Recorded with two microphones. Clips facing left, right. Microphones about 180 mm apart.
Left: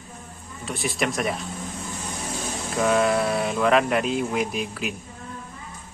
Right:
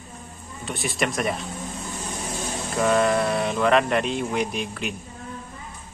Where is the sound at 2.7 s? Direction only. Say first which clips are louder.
Even; centre (ahead or behind).